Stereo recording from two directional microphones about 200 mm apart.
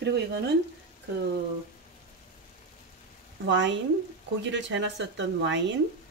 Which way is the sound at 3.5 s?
60° right (ahead or behind).